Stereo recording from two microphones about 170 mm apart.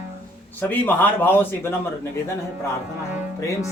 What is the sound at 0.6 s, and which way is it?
Speech, 10° left (ahead or behind).